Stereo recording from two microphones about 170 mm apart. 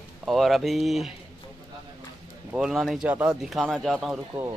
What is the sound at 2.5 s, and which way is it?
Speech, 5° right (ahead or behind).